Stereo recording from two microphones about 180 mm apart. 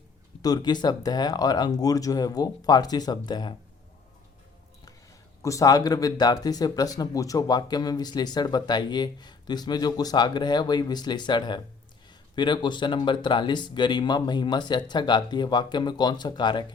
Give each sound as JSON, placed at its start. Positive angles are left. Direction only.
{"t": 0.4, "sound": "speech", "side_deg": 20}
{"t": 5.4, "sound": "speech", "side_deg": 15}